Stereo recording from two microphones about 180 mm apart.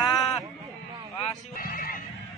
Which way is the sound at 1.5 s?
55° left (ahead or behind).